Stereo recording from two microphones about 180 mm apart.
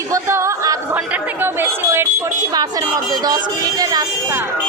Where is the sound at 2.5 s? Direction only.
20° right (ahead or behind).